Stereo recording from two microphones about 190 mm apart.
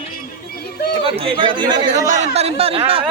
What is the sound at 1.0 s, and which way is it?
Speech, 30° right (ahead or behind).